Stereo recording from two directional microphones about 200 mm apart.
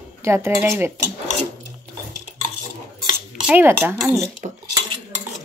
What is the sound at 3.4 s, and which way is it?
Speech, 10° right (ahead or behind).